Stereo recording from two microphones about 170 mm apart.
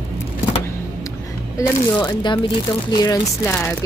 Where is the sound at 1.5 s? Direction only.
20° left (ahead or behind).